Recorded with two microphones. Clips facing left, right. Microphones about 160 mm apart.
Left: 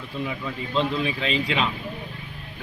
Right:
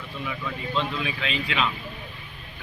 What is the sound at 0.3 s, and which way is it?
A man's voice, 30° left (ahead or behind).